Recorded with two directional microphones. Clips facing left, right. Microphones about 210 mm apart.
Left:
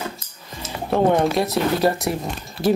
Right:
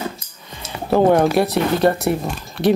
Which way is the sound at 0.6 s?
Centre (ahead or behind).